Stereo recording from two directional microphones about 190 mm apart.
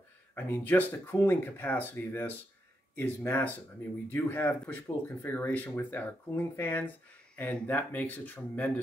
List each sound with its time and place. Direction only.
0.3 s speech: 10° left (ahead or behind)